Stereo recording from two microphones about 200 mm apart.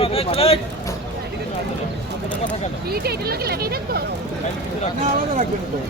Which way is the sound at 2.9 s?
50° right (ahead or behind).